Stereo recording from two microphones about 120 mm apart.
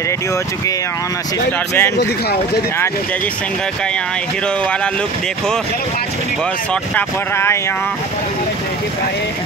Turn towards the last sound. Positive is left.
turn(degrees=20)  # may be behind; listen again after turning